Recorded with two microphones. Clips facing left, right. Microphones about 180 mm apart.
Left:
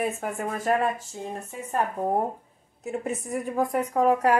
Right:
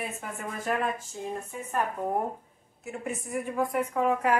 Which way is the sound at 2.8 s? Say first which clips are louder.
Left 5 dB; 35° left (ahead or behind).